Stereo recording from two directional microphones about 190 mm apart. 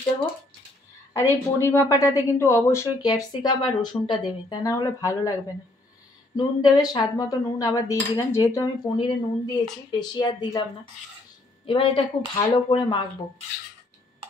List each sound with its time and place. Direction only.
1.1 s speech: 15° left (ahead or behind)
6.3 s speech: 20° left (ahead or behind)
11.6 s speech: 25° left (ahead or behind)